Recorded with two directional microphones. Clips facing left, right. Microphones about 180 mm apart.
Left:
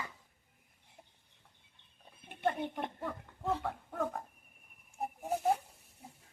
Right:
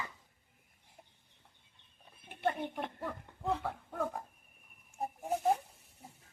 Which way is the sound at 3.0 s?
Centre (ahead or behind).